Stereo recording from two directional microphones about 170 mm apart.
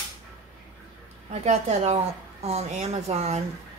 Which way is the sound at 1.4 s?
40° right (ahead or behind).